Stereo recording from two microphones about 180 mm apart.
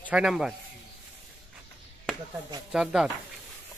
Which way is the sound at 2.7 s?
5° right (ahead or behind).